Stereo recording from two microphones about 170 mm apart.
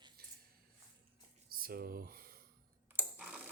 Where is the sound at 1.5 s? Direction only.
60° right (ahead or behind).